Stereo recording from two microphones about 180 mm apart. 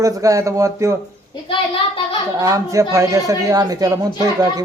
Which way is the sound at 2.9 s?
20° right (ahead or behind).